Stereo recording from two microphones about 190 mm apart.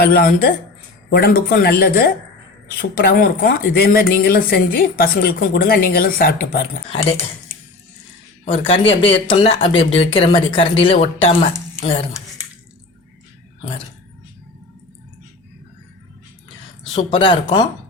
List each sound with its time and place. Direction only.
0.0 s speech: 50° left (ahead or behind)
8.4 s speech: 30° left (ahead or behind)
16.9 s speech: 25° left (ahead or behind)